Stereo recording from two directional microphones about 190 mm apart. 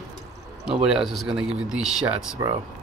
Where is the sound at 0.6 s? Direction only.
5° right (ahead or behind).